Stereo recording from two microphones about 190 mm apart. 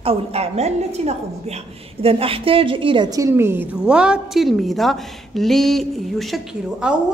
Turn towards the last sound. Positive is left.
turn(degrees=-5)  # may be behind; listen again after turning